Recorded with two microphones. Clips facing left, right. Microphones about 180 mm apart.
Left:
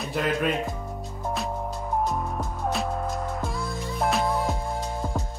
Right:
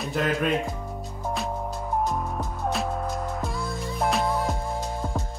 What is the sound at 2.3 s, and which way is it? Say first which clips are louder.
Music: even; centre (ahead or behind).